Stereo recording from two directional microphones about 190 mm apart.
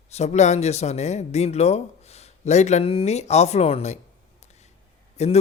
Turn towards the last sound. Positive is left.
turn(degrees=35)  # may be behind; listen again after turning